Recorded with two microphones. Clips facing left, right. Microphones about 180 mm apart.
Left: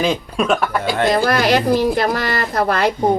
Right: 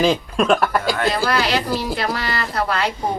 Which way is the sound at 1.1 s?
50° left (ahead or behind).